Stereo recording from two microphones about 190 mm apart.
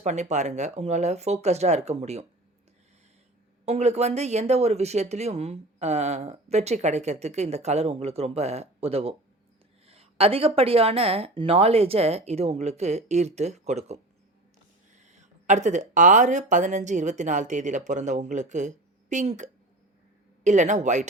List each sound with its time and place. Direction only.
0.0 s speech: 35° right (ahead or behind)
3.7 s speech: 35° right (ahead or behind)